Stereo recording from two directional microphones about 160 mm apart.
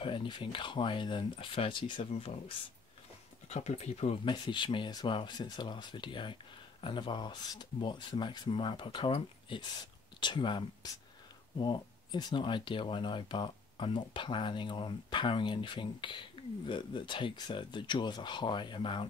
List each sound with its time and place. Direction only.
0.0 s speech: 30° left (ahead or behind)
3.4 s speech: 45° left (ahead or behind)
4.3 s speech: 30° left (ahead or behind)